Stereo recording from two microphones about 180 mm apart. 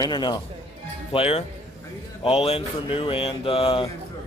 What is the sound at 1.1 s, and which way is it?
Speech, 35° left (ahead or behind).